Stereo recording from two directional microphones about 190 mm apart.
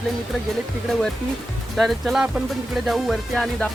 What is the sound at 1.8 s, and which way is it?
Speech, centre (ahead or behind).